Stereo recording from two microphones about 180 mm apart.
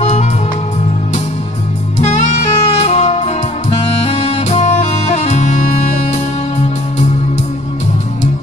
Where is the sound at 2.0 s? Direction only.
40° left (ahead or behind).